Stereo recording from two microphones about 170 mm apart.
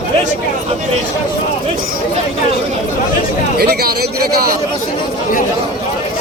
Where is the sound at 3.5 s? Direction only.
70° right (ahead or behind).